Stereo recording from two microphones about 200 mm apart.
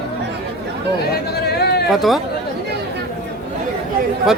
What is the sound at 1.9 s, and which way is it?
Speech, centre (ahead or behind).